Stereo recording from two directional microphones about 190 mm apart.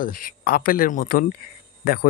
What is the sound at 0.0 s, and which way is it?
Speech, 45° left (ahead or behind).